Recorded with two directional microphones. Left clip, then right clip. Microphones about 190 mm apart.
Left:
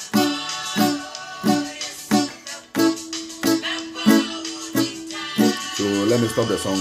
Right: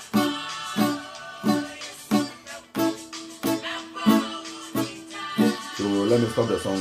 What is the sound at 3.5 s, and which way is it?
Music, 45° left (ahead or behind).